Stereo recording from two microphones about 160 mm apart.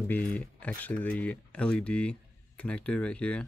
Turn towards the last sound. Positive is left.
turn(degrees=5)  # may be behind; listen again after turning